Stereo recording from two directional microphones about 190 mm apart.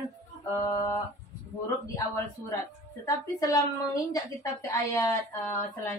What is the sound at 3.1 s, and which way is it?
A woman's voice, 15° left (ahead or behind).